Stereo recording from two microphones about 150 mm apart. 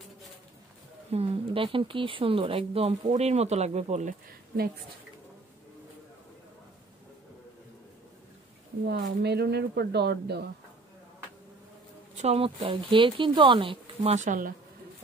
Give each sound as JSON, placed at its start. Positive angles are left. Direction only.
{"t": 1.1, "sound": "speech", "side_deg": -40}
{"t": 8.8, "sound": "speech", "side_deg": -90}
{"t": 12.2, "sound": "speech", "side_deg": -40}
{"t": 14.1, "sound": "speech", "side_deg": -60}